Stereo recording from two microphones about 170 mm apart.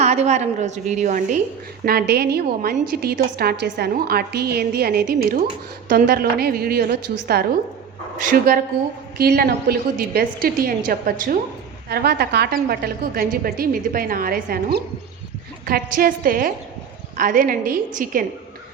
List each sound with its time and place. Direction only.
0.0 s a woman's voice: 40° right (ahead or behind)
1.8 s a woman's voice: 65° right (ahead or behind)
8.2 s a woman's voice: 55° right (ahead or behind)
9.1 s a woman's voice: 65° right (ahead or behind)
11.9 s a woman's voice: 70° right (ahead or behind); by 18.3 s 55° right (ahead or behind)